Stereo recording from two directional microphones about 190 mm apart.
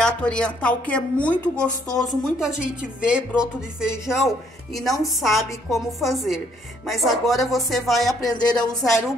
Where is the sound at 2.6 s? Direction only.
5° right (ahead or behind).